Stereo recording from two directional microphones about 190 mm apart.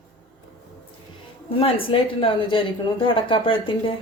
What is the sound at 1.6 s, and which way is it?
A woman's voice, 30° left (ahead or behind).